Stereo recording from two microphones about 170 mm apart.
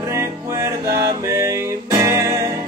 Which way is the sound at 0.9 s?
20° right (ahead or behind).